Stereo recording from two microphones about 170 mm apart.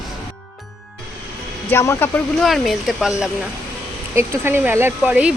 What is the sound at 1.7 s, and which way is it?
Speech, 15° left (ahead or behind).